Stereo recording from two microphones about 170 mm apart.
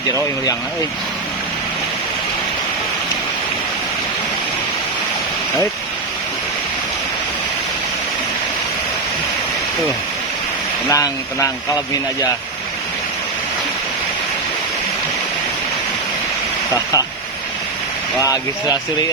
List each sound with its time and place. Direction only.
0.1 s speech: 20° left (ahead or behind)
10.8 s speech: 20° left (ahead or behind)
18.2 s speech: 20° left (ahead or behind)